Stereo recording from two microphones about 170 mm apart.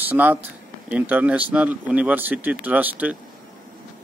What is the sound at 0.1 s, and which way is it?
A man's voice, 10° right (ahead or behind).